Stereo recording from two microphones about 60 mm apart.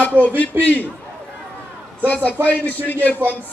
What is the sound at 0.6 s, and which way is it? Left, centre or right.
Speech, left.